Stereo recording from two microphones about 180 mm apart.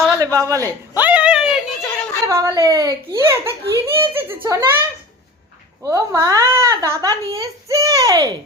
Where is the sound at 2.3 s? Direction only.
15° right (ahead or behind).